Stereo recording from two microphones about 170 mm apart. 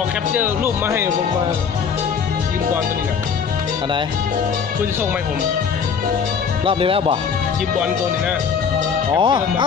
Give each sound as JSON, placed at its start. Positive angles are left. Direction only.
{"t": 0.3, "sound": "speech", "side_deg": -10}
{"t": 6.6, "sound": "speech", "side_deg": -30}
{"t": 9.2, "sound": "speech", "side_deg": -30}